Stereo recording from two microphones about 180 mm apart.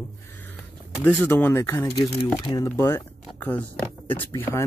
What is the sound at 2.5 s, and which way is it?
Speech, 20° left (ahead or behind).